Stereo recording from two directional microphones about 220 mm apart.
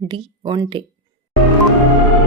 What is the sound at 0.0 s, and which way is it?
Speech, 20° right (ahead or behind).